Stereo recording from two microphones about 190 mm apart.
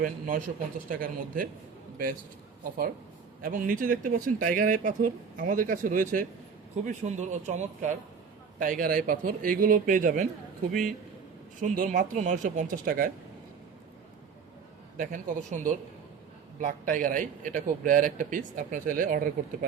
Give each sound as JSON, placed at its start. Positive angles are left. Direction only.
{"t": 0.0, "sound": "speech", "side_deg": -45}
{"t": 3.4, "sound": "speech", "side_deg": -45}
{"t": 14.9, "sound": "speech", "side_deg": -45}